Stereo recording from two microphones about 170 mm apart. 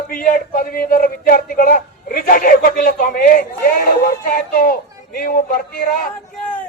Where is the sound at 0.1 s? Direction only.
55° left (ahead or behind).